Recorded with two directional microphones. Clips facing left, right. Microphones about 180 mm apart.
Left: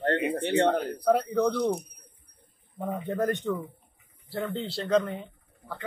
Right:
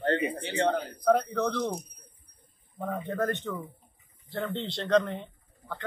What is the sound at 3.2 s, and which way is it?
A man's voice, 10° left (ahead or behind).